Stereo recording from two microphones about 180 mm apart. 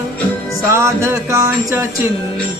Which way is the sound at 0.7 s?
15° right (ahead or behind).